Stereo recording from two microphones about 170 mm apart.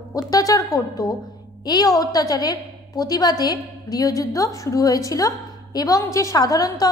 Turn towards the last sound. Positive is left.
turn(degrees=20)  # may be behind; listen again after turning